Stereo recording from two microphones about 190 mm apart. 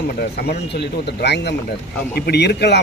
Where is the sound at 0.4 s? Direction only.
60° left (ahead or behind).